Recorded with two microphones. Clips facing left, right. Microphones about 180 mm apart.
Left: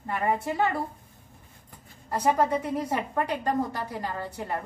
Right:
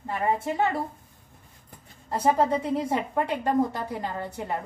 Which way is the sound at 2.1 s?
25° right (ahead or behind).